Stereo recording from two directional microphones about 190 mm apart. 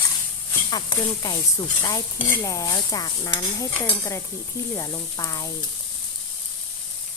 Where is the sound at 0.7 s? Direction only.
20° left (ahead or behind).